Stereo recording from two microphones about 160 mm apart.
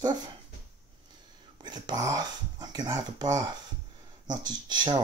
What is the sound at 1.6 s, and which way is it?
Speech, 25° right (ahead or behind).